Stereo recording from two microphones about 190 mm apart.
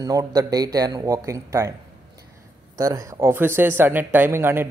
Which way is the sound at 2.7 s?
20° right (ahead or behind).